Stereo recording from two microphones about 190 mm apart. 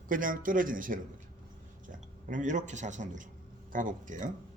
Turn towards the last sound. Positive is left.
turn(degrees=-40)  # may be behind; listen again after turning